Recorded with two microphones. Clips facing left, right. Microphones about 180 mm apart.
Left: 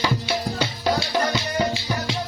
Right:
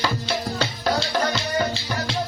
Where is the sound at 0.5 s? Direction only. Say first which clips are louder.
Even; 10° left (ahead or behind).